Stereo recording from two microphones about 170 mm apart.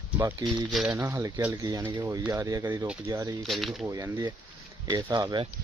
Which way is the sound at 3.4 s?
Centre (ahead or behind).